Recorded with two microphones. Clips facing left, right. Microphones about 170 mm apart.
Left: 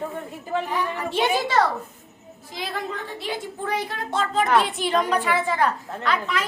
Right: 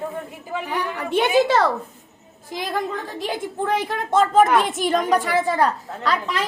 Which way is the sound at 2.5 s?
45° right (ahead or behind).